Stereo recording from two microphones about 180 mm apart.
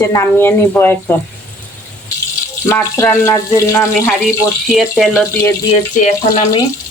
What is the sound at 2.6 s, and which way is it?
Speech, 15° left (ahead or behind).